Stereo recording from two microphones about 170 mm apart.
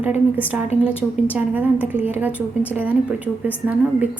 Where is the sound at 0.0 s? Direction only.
10° right (ahead or behind).